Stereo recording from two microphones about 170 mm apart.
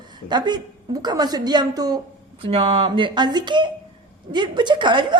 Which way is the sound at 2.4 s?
35° right (ahead or behind).